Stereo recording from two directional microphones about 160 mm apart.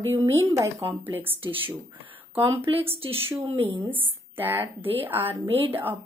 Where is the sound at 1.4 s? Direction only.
35° right (ahead or behind).